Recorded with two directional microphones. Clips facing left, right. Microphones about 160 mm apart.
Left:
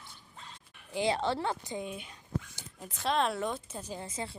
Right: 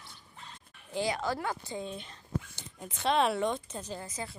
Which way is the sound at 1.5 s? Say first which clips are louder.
Even; 15° left (ahead or behind).